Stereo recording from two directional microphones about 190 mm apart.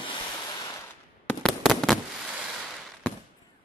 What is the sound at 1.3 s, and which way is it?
Fireworks, 5° left (ahead or behind).